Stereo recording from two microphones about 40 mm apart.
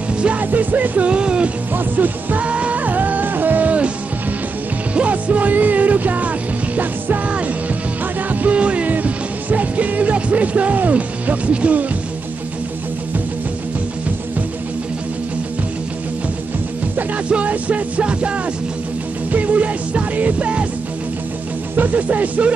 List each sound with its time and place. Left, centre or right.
0.4 s music: right
1.7 s music: right
2.4 s music: right
2.8 s music: right
4.9 s music: right
8.3 s music: right
8.5 s music: right
8.9 s music: right
17.3 s music: right
21.7 s music: right